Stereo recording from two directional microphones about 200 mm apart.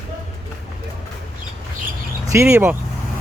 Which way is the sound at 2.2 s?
15° right (ahead or behind).